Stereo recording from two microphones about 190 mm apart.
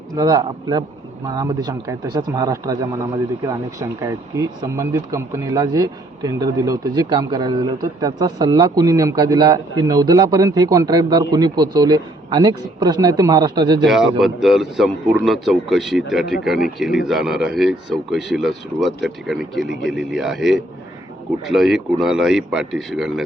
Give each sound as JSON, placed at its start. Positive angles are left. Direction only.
{"t": 0.1, "sound": "a man's voice", "side_deg": -20}
{"t": 13.8, "sound": "speech", "side_deg": 0}